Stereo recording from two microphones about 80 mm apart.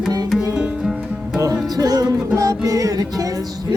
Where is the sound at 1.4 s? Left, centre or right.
Right.